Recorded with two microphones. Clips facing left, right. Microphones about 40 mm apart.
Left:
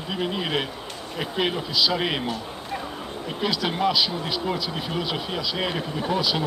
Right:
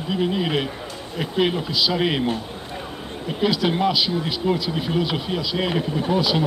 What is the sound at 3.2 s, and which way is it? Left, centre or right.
Speech, centre.